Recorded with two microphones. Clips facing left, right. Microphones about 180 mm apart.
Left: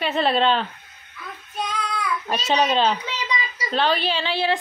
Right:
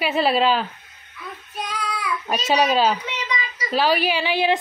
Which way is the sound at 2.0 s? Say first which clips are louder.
Right 1 dB; 5° right (ahead or behind).